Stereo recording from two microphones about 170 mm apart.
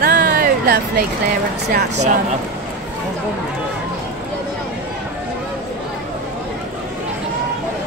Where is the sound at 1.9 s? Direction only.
45° right (ahead or behind).